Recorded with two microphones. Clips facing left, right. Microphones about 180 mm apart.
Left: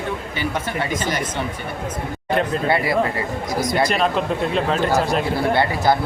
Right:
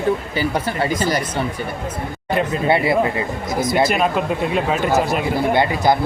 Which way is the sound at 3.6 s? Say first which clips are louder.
Right 2 dB; 5° right (ahead or behind).